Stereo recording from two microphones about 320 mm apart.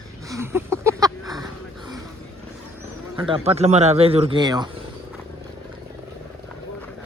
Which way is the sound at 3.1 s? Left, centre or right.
Centre.